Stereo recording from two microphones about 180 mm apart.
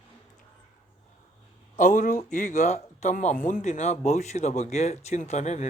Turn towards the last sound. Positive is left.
turn(degrees=40)  # may be behind; listen again after turning